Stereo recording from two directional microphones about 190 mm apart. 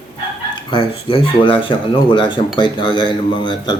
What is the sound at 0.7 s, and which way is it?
Speech, 25° left (ahead or behind).